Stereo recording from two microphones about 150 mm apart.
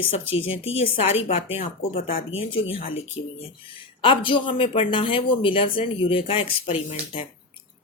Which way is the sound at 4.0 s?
35° left (ahead or behind).